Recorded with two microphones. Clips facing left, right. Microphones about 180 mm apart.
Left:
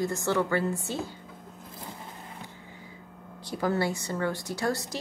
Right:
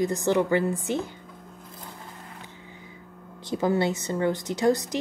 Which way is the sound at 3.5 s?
20° right (ahead or behind).